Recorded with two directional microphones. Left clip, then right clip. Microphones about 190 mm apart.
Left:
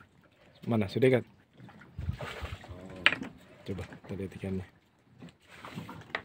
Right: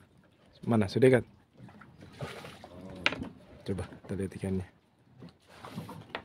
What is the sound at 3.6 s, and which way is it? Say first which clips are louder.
Speech: right 3 dB; 25° right (ahead or behind).